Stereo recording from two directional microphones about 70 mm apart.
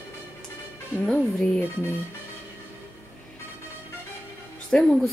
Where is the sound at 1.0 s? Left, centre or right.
Centre.